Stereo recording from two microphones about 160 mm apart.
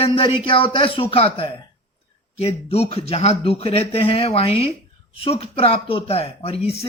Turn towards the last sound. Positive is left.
turn(degrees=35)  # may be behind; listen again after turning